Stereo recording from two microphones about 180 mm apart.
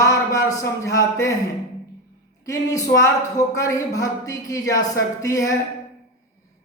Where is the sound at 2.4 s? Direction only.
20° left (ahead or behind).